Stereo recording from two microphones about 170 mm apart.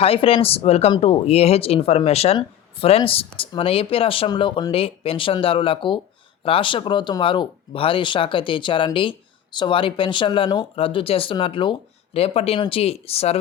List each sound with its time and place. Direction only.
0.0 s speech: 35° left (ahead or behind)